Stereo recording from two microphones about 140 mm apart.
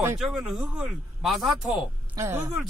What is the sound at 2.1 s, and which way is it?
Speech, 20° right (ahead or behind).